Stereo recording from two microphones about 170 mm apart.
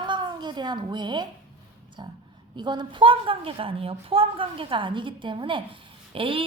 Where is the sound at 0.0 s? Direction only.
25° right (ahead or behind).